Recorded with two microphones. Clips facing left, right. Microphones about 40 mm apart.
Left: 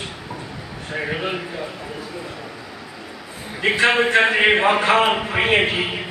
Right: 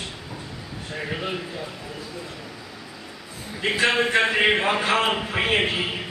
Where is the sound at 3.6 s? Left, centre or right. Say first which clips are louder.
Left 4 dB; centre.